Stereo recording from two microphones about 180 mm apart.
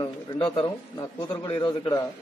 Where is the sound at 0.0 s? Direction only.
25° left (ahead or behind).